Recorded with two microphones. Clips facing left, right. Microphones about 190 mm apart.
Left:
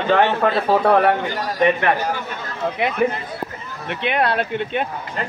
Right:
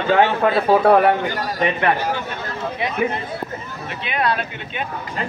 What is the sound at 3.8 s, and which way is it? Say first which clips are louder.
Speech: left 3 dB; 60° left (ahead or behind).